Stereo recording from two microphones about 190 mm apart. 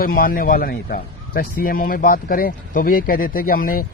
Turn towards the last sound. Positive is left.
turn(degrees=50)  # may be behind; listen again after turning